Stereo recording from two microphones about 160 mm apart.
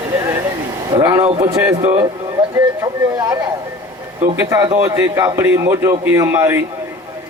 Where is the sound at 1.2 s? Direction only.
40° right (ahead or behind).